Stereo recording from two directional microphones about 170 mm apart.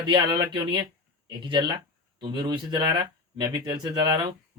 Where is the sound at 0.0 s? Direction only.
25° right (ahead or behind).